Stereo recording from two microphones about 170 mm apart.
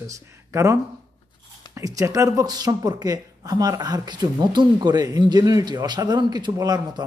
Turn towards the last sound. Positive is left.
turn(degrees=-25)  # may be behind; listen again after turning